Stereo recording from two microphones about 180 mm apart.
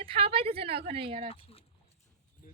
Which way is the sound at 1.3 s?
30° left (ahead or behind).